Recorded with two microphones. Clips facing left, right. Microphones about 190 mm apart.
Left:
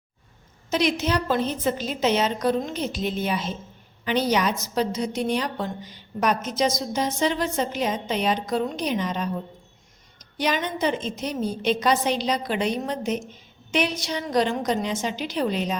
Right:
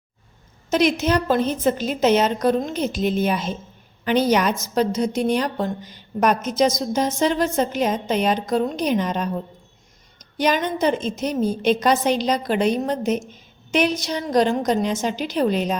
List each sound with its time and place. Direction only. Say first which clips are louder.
0.7 s a woman's voice: right 4 dB; 50° right (ahead or behind)
10.3 s a woman's voice: right 5 dB; 45° right (ahead or behind)